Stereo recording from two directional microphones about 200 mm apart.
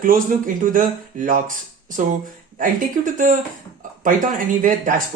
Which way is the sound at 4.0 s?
40° right (ahead or behind).